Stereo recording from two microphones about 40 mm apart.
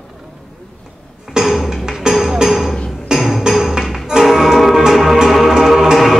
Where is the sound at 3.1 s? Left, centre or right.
Centre.